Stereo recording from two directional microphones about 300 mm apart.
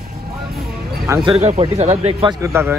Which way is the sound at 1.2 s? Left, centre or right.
Right.